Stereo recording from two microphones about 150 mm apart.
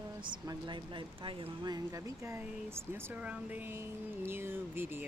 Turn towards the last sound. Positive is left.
turn(degrees=-15)  # may be behind; listen again after turning